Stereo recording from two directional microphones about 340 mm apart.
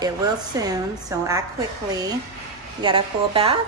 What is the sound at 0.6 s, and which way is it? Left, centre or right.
Speech, centre.